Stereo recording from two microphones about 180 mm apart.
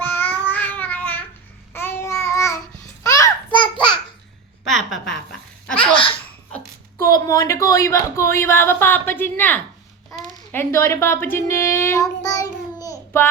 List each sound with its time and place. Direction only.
0.0 s child singing: 10° left (ahead or behind)
3.0 s babbling: 20° left (ahead or behind)
4.7 s a sound: centre (ahead or behind)
5.9 s laughter: 30° left (ahead or behind)
7.1 s a child's voice: 20° left (ahead or behind)
11.3 s child singing: 15° left (ahead or behind)